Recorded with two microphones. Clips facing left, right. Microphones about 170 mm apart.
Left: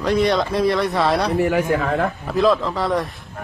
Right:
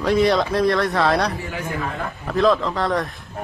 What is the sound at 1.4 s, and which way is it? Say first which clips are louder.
Speech: left 10 dB; 65° left (ahead or behind).